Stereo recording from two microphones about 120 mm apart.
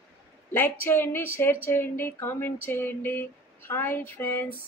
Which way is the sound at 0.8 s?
20° left (ahead or behind).